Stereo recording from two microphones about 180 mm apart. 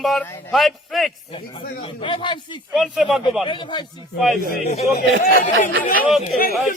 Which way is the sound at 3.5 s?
25° left (ahead or behind).